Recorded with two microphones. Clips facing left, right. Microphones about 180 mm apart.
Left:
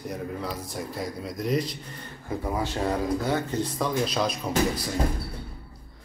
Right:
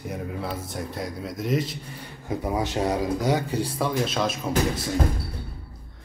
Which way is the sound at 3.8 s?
Centre (ahead or behind).